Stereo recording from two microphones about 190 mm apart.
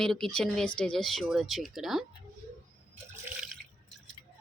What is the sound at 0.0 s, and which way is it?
A woman's voice, 5° left (ahead or behind).